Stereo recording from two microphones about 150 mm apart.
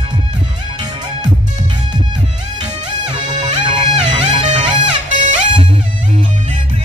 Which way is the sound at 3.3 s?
35° right (ahead or behind).